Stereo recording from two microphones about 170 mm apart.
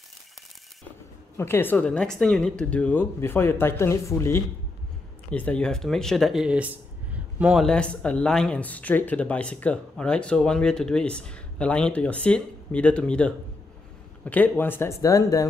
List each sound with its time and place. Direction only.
1.3 s speech: 15° left (ahead or behind); by 7.6 s 5° right (ahead or behind)
7.6 s speech: 5° left (ahead or behind)